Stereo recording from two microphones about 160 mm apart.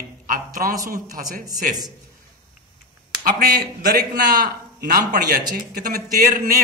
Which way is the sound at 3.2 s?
65° right (ahead or behind).